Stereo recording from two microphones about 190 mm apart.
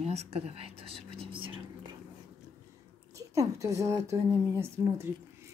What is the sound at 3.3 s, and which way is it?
A woman's voice, 15° right (ahead or behind).